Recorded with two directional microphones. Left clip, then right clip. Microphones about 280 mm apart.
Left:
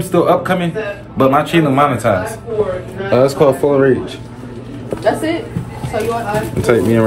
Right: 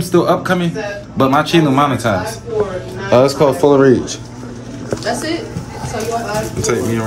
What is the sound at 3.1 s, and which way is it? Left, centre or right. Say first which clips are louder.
Speech: right 1 dB; centre.